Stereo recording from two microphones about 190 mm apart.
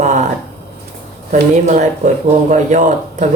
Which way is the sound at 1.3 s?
40° right (ahead or behind).